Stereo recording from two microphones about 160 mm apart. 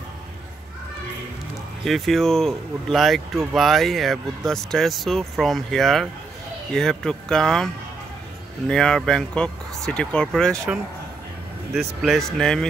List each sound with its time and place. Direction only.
1.9 s speech: centre (ahead or behind)
12.0 s speech: centre (ahead or behind)